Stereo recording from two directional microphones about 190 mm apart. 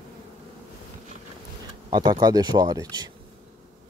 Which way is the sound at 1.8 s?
25° right (ahead or behind).